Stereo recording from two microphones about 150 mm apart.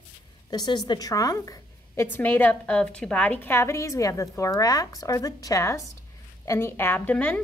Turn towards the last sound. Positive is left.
turn(degrees=10)  # may be behind; listen again after turning